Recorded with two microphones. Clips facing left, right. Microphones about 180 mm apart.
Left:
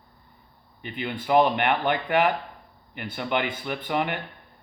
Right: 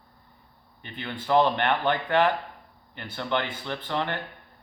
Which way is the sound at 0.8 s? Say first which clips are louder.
Left 4 dB; 15° left (ahead or behind).